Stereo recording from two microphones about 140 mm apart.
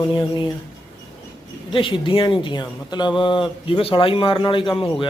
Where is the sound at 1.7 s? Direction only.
35° left (ahead or behind).